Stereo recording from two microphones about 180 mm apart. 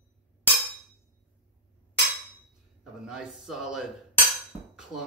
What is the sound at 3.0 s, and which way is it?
Speech, 5° right (ahead or behind).